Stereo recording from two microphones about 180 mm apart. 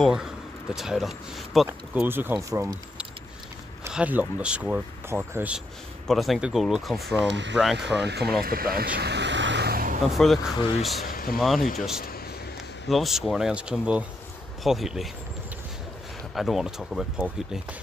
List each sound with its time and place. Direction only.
0.0 s speech: 5° right (ahead or behind)
1.7 s speech: 10° right (ahead or behind)
6.0 s speech: centre (ahead or behind)
8.0 s speech: 65° right (ahead or behind)
8.4 s a sound: 55° right (ahead or behind)
10.1 s speech: centre (ahead or behind)
11.1 s vehicle: 55° left (ahead or behind)
11.3 s speech: centre (ahead or behind)
12.8 s speech: centre (ahead or behind)
16.3 s speech: centre (ahead or behind)